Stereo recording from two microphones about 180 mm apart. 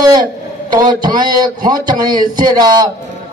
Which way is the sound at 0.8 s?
25° right (ahead or behind).